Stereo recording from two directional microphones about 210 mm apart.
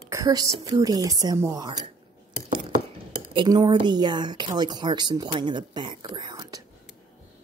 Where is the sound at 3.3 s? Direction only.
20° right (ahead or behind).